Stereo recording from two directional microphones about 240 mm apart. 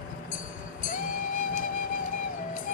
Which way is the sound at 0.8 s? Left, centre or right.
Left.